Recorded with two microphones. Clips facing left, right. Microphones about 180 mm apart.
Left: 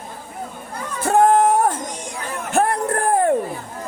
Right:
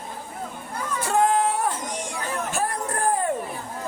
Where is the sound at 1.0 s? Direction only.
50° left (ahead or behind).